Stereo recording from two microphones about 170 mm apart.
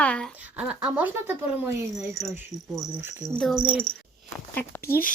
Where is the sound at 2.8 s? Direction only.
5° right (ahead or behind).